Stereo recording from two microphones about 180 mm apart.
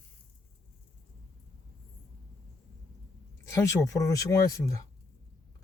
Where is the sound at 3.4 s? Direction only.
15° left (ahead or behind).